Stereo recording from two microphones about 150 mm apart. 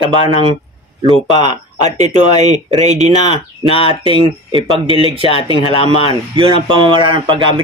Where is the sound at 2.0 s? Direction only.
50° right (ahead or behind).